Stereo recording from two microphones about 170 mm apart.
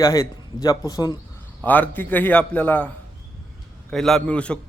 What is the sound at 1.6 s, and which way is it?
A man's voice, 10° left (ahead or behind).